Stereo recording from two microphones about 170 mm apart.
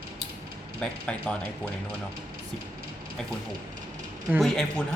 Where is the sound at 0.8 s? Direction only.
5° left (ahead or behind).